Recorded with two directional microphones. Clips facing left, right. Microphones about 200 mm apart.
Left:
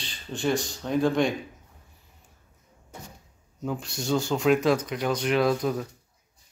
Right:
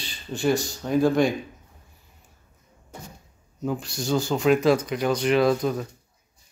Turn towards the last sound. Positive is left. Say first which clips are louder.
# right 3 dB
turn(degrees=0)  # may be behind; listen again after turning